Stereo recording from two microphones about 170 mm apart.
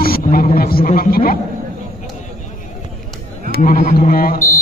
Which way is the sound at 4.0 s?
60° left (ahead or behind).